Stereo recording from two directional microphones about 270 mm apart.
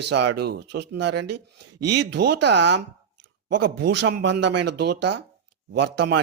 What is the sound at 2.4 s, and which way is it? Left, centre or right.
Speech, right.